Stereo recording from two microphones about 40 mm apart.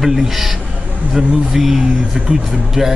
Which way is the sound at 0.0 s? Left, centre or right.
Centre.